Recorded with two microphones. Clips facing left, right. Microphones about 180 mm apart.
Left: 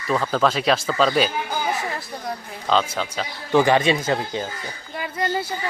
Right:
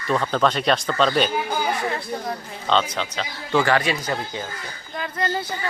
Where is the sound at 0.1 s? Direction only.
5° left (ahead or behind).